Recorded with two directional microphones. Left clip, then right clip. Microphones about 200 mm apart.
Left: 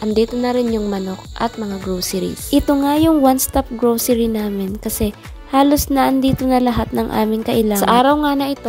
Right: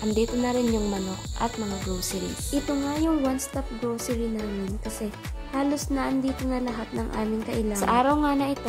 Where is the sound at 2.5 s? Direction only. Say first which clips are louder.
Left 13 dB; 50° left (ahead or behind).